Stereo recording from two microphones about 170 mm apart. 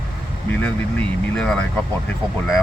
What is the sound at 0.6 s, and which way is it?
Speech, 5° left (ahead or behind).